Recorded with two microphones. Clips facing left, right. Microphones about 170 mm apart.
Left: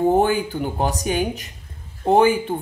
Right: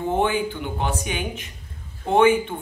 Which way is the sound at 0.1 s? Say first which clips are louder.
Left 4 dB; 40° left (ahead or behind).